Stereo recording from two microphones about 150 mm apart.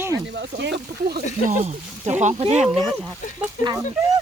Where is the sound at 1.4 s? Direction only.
50° right (ahead or behind).